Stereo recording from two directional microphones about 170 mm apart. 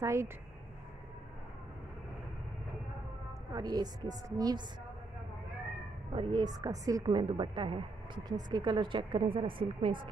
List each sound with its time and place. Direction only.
0.0 s speech: 15° right (ahead or behind)
3.5 s a woman's voice: 25° right (ahead or behind)
6.1 s a woman's voice: 25° right (ahead or behind)